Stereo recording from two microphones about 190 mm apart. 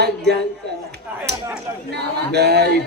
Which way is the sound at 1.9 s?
60° right (ahead or behind).